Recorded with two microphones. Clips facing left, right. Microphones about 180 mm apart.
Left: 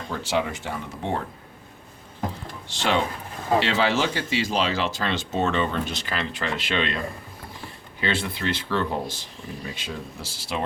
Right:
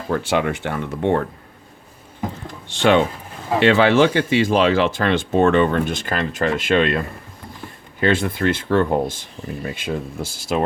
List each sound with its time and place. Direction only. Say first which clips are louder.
0.1 s speech: right 6 dB; 60° right (ahead or behind)
2.6 s speech: right 8 dB; 55° right (ahead or behind)
8.0 s speech: right 8 dB; 50° right (ahead or behind)